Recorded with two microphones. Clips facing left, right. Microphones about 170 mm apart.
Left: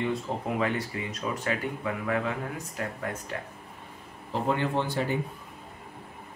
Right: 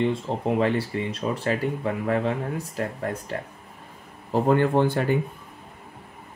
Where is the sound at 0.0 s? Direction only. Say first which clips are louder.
Right 5 dB; 30° right (ahead or behind).